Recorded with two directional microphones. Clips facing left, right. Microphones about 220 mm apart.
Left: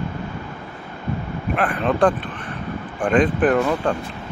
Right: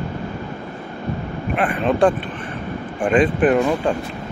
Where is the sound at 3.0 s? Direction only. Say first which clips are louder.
Right 1 dB; 5° right (ahead or behind).